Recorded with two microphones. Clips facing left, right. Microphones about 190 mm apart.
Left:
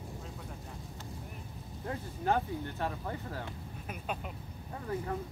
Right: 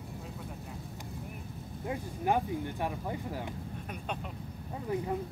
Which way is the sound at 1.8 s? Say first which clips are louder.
Right 1 dB; 15° right (ahead or behind).